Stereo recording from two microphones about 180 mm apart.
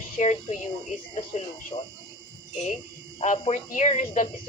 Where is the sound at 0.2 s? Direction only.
40° left (ahead or behind).